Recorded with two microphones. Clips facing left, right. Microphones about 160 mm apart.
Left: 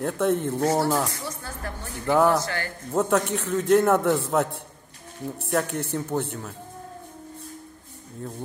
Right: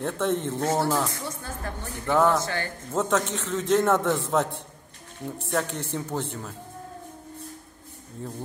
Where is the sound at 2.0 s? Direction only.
10° left (ahead or behind).